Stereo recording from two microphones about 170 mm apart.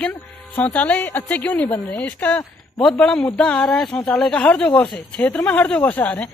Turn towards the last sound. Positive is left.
turn(degrees=10)  # may be behind; listen again after turning